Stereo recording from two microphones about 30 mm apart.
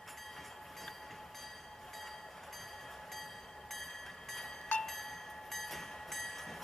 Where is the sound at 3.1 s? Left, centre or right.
Centre.